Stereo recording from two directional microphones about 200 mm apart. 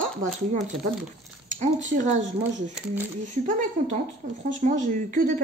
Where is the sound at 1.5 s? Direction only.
40° right (ahead or behind).